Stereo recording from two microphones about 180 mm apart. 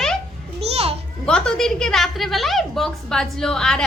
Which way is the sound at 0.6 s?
35° right (ahead or behind).